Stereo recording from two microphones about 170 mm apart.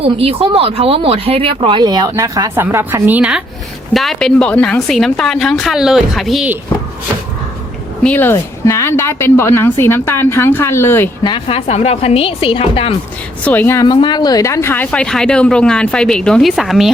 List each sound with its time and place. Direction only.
0.0 s speech: 35° right (ahead or behind); by 6.5 s centre (ahead or behind)
8.0 s a woman's voice: 10° left (ahead or behind)
11.2 s a woman's voice: 30° left (ahead or behind)
13.4 s a woman's voice: 10° left (ahead or behind)
13.8 s speech: 25° left (ahead or behind); by 16.9 s centre (ahead or behind)